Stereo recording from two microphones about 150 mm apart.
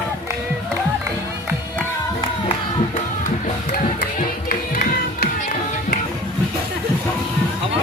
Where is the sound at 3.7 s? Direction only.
70° left (ahead or behind).